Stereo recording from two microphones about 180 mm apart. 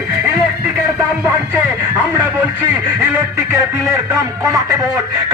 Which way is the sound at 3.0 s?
15° right (ahead or behind).